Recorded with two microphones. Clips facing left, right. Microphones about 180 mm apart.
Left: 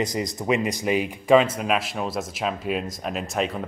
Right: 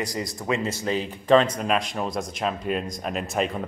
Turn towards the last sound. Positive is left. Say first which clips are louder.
# even
turn(degrees=0)  # may be behind; listen again after turning